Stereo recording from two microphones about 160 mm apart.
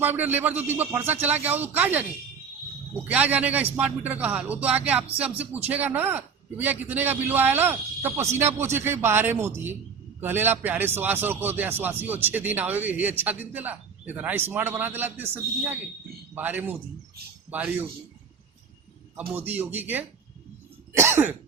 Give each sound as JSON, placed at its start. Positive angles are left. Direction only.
{"t": 0.0, "sound": "a man's voice", "side_deg": -10}
{"t": 3.1, "sound": "a man's voice", "side_deg": -10}
{"t": 19.3, "sound": "a man's voice", "side_deg": -10}